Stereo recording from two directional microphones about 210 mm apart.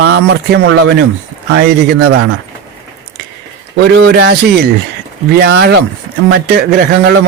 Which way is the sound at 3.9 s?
55° right (ahead or behind).